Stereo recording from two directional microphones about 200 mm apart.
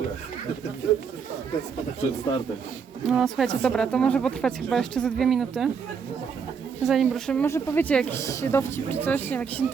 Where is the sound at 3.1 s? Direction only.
Centre (ahead or behind).